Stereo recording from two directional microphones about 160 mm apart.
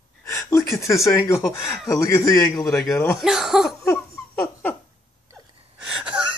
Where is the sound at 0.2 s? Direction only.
20° left (ahead or behind).